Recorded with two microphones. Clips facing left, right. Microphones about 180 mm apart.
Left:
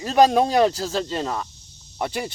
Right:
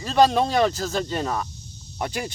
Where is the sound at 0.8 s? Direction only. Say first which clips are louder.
Even; centre (ahead or behind).